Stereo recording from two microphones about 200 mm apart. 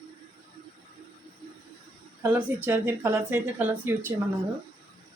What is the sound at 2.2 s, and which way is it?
Speech, 10° right (ahead or behind).